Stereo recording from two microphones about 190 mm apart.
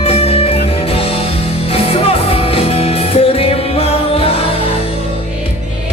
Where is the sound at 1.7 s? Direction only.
30° left (ahead or behind).